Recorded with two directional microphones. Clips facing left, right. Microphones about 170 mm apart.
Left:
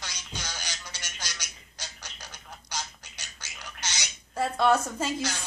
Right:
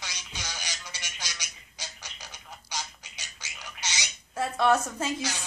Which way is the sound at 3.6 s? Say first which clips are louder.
Even; centre (ahead or behind).